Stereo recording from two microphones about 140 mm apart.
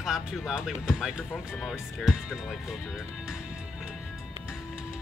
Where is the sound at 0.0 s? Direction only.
5° right (ahead or behind).